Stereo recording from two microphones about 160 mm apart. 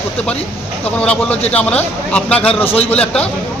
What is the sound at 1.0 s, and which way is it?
A man's voice, 10° left (ahead or behind).